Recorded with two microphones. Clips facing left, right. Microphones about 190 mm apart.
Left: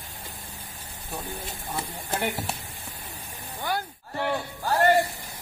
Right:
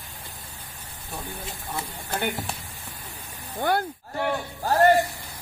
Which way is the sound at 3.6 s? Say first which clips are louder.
Right 6 dB; 55° right (ahead or behind).